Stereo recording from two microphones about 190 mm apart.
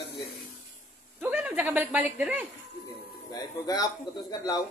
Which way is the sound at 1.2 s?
10° right (ahead or behind).